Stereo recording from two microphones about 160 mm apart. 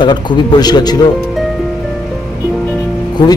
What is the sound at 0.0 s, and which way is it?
Speech, 30° left (ahead or behind).